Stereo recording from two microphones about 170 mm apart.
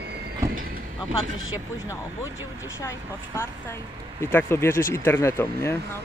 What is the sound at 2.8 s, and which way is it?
Speech, 20° left (ahead or behind).